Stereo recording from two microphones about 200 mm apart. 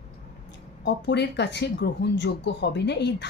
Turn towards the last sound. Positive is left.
turn(degrees=60)  # may be behind; listen again after turning